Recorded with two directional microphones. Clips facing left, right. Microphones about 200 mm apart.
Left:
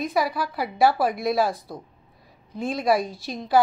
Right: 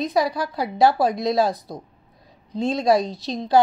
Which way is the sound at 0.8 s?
20° right (ahead or behind).